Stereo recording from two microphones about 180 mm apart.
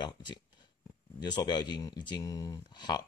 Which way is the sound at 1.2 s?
25° left (ahead or behind).